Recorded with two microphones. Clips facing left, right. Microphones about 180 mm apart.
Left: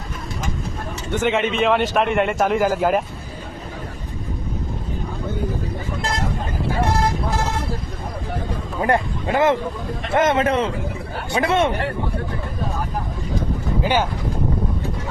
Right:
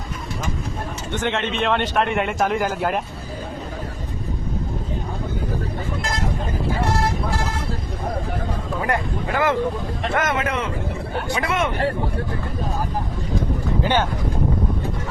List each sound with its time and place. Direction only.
1.1 s a man's voice: 10° left (ahead or behind)
8.8 s a man's voice: 25° left (ahead or behind)
13.8 s speech: 10° left (ahead or behind)